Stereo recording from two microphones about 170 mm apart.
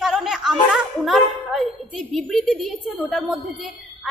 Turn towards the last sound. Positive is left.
turn(degrees=0)  # may be behind; listen again after turning